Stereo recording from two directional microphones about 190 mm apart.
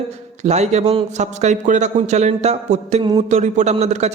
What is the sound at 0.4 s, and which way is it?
A man's voice, 35° right (ahead or behind).